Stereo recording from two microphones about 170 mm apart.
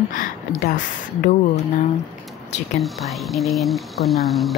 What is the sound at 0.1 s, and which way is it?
Speech, 50° left (ahead or behind).